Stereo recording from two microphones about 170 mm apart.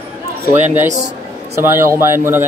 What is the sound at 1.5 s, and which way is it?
Speech, 15° right (ahead or behind).